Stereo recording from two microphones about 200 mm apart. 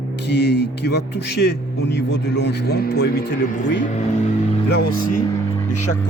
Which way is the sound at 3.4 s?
40° left (ahead or behind).